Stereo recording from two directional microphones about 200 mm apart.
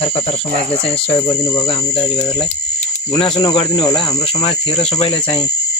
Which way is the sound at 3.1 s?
25° left (ahead or behind).